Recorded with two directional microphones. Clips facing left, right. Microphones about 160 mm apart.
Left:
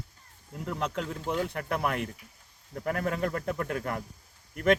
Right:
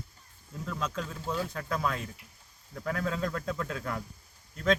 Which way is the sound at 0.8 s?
60° left (ahead or behind).